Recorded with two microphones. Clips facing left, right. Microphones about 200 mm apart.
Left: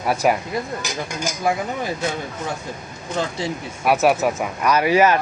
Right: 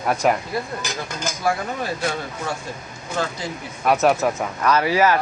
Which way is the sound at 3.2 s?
25° left (ahead or behind).